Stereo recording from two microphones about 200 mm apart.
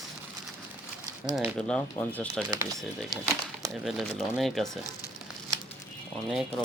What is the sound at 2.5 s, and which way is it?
Speech, 20° right (ahead or behind).